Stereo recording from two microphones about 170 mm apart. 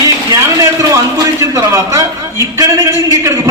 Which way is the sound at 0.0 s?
20° right (ahead or behind).